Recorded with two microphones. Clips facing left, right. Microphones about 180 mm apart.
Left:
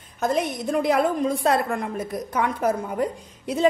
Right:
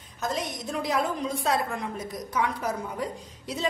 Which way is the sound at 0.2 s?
55° left (ahead or behind).